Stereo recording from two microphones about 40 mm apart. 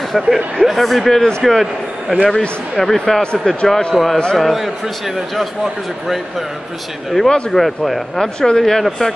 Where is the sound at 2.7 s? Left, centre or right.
Centre.